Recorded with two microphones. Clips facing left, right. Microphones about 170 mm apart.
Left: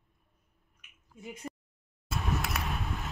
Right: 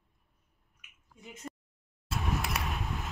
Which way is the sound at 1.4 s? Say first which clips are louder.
Even; 5° left (ahead or behind).